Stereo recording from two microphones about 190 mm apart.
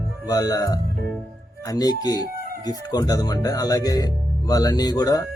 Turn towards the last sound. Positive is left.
turn(degrees=20)  # may be behind; listen again after turning